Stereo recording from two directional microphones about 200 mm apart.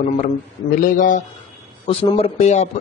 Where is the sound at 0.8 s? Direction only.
40° left (ahead or behind).